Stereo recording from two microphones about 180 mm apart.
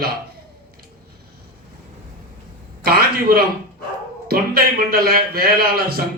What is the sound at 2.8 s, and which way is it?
A man's voice, 55° right (ahead or behind).